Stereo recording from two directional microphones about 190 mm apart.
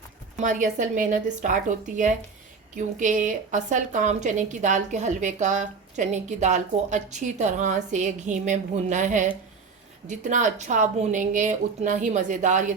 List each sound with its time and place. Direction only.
0.3 s a woman's voice: 40° right (ahead or behind)
2.7 s a woman's voice: 40° right (ahead or behind)